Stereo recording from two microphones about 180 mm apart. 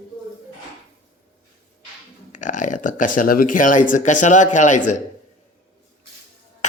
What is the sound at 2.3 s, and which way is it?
Speech, 45° left (ahead or behind).